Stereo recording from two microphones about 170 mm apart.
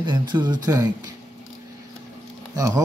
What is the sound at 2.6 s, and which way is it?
Speech, 20° right (ahead or behind).